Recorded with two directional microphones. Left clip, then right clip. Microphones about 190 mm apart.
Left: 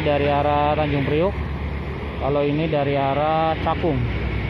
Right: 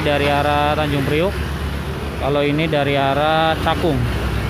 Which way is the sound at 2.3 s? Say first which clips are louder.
Right 3 dB; 50° right (ahead or behind).